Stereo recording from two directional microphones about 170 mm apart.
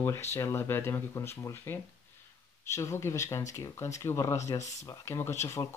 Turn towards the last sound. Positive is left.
turn(degrees=15)  # may be behind; listen again after turning